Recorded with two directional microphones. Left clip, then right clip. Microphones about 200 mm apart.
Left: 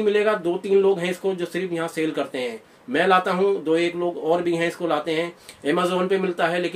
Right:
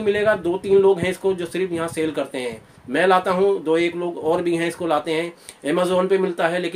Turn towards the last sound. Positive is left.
turn(degrees=-25)  # may be behind; listen again after turning